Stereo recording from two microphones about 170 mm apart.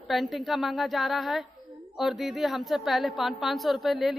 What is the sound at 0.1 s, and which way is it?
A woman's voice, centre (ahead or behind).